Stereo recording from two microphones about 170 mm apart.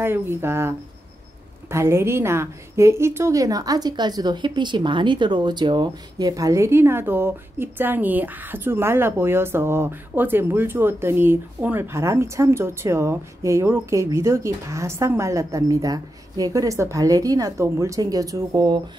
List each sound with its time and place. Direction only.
0.0 s a woman's voice: 15° right (ahead or behind)